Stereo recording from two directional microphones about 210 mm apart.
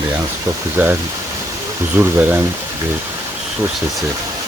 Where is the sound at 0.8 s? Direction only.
10° right (ahead or behind).